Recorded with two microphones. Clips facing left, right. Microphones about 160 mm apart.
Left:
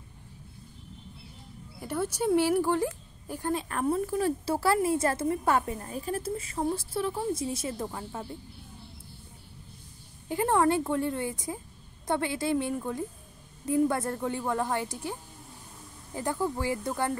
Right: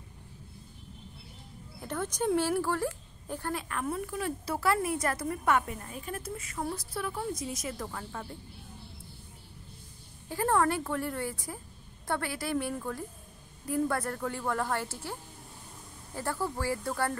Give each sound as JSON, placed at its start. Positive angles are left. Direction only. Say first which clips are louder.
{"t": 1.8, "sound": "a woman's voice", "louder": "left 3 dB", "side_deg": 10}
{"t": 3.6, "sound": "a woman's voice", "louder": "left 6 dB", "side_deg": 35}
{"t": 10.2, "sound": "a woman's voice", "louder": "left 3 dB", "side_deg": 15}
{"t": 16.2, "sound": "a woman's voice", "louder": "left 3 dB", "side_deg": 15}